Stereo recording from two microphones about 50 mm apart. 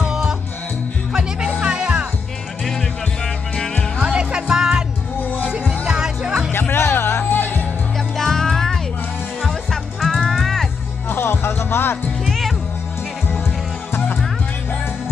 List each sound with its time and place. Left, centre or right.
0.1 s music: centre
2.6 s music: centre
4.0 s music: centre
5.2 s music: left
5.5 s music: centre
6.7 s music: left
8.2 s music: centre
9.9 s music: centre
11.1 s music: left
12.3 s music: centre